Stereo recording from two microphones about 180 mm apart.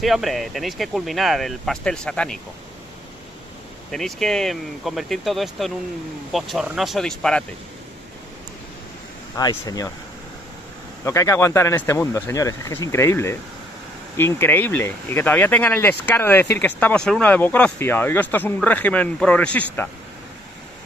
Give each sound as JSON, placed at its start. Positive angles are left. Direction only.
{"t": 0.0, "sound": "speech", "side_deg": 0}
{"t": 3.9, "sound": "speech", "side_deg": 0}
{"t": 9.4, "sound": "speech", "side_deg": 20}
{"t": 11.1, "sound": "speech", "side_deg": 15}